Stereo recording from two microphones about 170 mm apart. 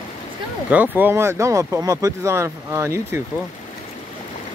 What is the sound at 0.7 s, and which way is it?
Speech, 10° right (ahead or behind).